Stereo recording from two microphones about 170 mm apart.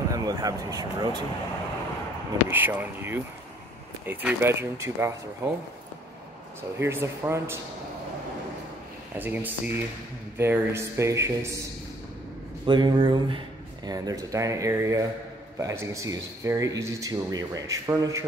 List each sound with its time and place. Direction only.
0.1 s speech: 20° right (ahead or behind)
2.5 s speech: 10° right (ahead or behind)
6.8 s speech: 15° right (ahead or behind)
9.2 s speech: 10° right (ahead or behind)
12.6 s speech: 25° right (ahead or behind)